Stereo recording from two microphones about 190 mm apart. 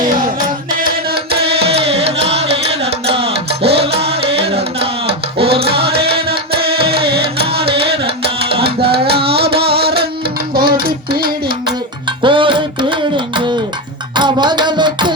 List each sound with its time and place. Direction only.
0.8 s music: 50° right (ahead or behind)
1.6 s music: 30° right (ahead or behind)
4.8 s a sound: 30° right (ahead or behind)
5.5 s music: 60° right (ahead or behind)
12.2 s music: 25° right (ahead or behind)